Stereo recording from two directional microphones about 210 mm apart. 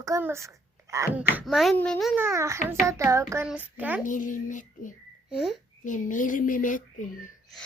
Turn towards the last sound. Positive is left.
turn(degrees=40)  # may be behind; listen again after turning